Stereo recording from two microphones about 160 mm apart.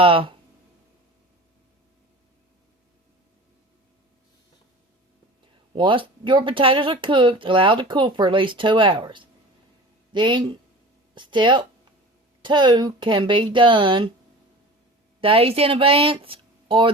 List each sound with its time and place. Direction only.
0.0 s speech: 35° right (ahead or behind)
5.7 s speech: 30° right (ahead or behind)
15.2 s speech: 35° right (ahead or behind)